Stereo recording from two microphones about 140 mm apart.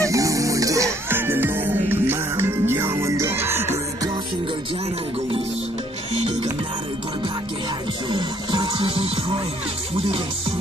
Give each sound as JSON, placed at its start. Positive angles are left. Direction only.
{"t": 0.0, "sound": "music", "side_deg": -25}
{"t": 8.1, "sound": "music", "side_deg": -35}